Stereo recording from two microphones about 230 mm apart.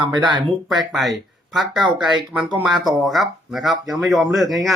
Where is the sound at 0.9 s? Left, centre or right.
Centre.